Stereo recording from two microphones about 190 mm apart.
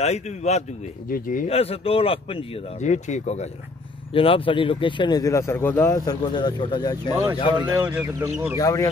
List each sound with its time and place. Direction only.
0.0 s speech: 35° left (ahead or behind)
1.5 s speech: 30° left (ahead or behind)
7.7 s speech: 10° right (ahead or behind)
8.5 s speech: 15° left (ahead or behind)